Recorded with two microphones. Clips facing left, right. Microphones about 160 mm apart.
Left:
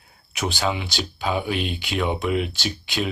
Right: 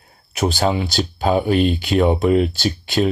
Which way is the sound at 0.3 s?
40° right (ahead or behind).